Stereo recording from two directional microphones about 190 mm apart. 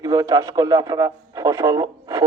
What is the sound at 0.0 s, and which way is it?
A man's voice, 20° right (ahead or behind).